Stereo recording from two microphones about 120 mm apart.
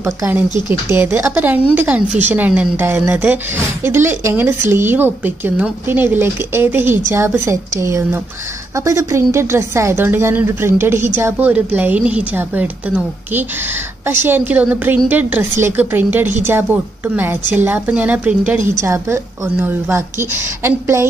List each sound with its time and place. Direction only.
0.0 s a woman's voice: 20° right (ahead or behind)
18.8 s a woman's voice: 25° right (ahead or behind)